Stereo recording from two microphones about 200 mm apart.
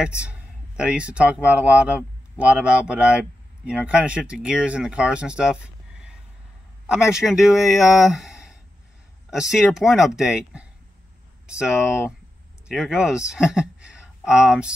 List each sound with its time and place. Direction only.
0.0 s speech: 5° right (ahead or behind)